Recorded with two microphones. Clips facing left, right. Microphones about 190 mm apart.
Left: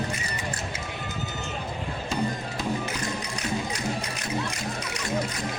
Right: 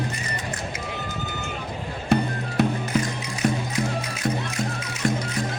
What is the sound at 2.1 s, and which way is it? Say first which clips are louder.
Music: right 7 dB; 65° right (ahead or behind).